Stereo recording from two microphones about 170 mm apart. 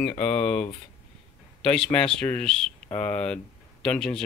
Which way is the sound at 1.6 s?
5° left (ahead or behind).